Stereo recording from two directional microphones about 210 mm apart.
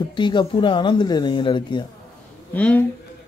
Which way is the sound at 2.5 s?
5° left (ahead or behind).